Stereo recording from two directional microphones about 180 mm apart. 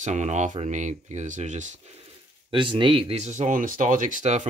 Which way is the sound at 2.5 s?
30° right (ahead or behind).